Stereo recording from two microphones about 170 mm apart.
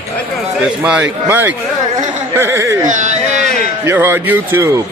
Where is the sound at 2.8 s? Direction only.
45° right (ahead or behind).